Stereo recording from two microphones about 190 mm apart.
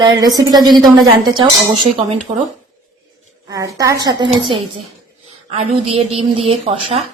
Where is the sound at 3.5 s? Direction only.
15° right (ahead or behind).